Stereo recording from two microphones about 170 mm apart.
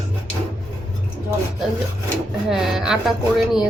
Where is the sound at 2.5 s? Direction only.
5° right (ahead or behind).